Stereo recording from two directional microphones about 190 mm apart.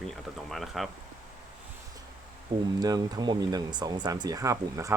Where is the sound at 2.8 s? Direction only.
20° right (ahead or behind).